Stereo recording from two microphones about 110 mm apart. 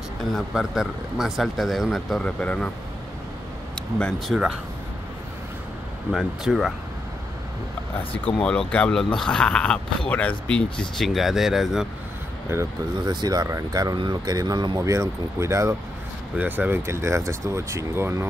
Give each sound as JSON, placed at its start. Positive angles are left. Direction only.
{"t": 0.3, "sound": "speech", "side_deg": -5}
{"t": 4.3, "sound": "speech", "side_deg": -10}
{"t": 6.1, "sound": "speech", "side_deg": 0}
{"t": 8.4, "sound": "speech", "side_deg": 10}
{"t": 13.0, "sound": "speech", "side_deg": -40}
{"t": 16.3, "sound": "speech", "side_deg": -15}